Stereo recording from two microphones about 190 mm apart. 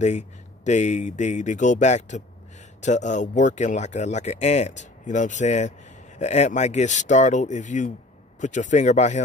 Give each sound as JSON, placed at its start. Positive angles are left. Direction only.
{"t": 0.7, "sound": "speech", "side_deg": 35}